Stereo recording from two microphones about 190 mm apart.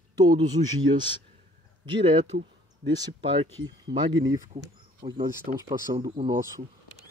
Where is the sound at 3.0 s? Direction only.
25° right (ahead or behind).